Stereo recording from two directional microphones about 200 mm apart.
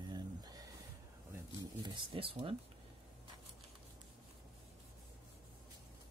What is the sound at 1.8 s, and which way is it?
Speech, 25° right (ahead or behind).